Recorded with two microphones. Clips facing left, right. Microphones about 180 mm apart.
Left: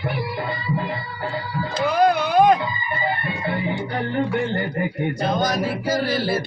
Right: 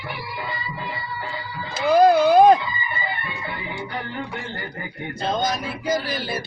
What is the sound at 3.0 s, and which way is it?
Music, 45° left (ahead or behind).